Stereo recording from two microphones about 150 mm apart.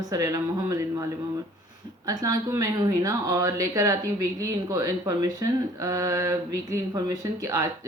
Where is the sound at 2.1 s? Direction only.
25° right (ahead or behind).